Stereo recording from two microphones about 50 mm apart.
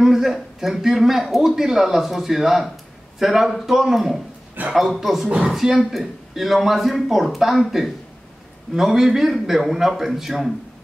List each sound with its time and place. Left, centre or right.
0.0 s a man's voice: centre